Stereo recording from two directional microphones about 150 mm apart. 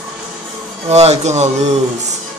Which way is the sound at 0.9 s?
45° right (ahead or behind).